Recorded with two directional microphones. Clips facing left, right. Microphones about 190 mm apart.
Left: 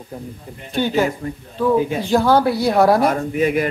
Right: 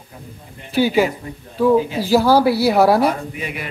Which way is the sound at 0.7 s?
5° right (ahead or behind).